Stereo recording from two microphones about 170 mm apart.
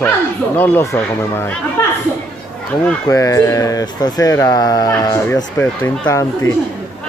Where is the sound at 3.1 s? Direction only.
20° left (ahead or behind).